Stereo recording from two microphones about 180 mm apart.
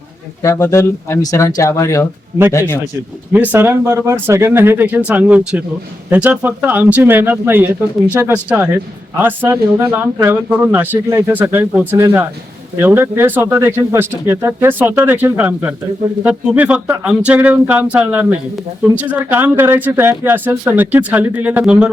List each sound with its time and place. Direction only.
0.4 s speech: 15° left (ahead or behind)
3.3 s speech: 10° right (ahead or behind)